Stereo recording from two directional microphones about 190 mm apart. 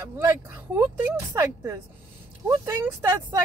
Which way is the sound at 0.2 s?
10° right (ahead or behind).